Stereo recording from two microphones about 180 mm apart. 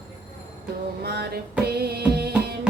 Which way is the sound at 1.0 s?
65° right (ahead or behind).